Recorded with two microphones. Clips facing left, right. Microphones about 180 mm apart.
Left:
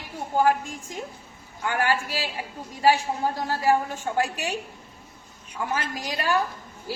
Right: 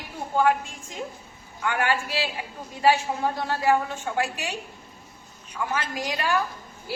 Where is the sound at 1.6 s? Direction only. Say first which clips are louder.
Even; 35° left (ahead or behind).